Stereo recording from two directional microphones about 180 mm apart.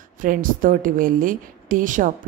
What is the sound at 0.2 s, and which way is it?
A woman's voice, 50° right (ahead or behind).